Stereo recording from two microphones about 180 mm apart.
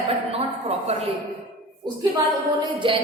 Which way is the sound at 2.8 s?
25° right (ahead or behind).